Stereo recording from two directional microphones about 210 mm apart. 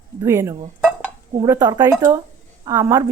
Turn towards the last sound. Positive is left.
turn(degrees=-15)  # may be behind; listen again after turning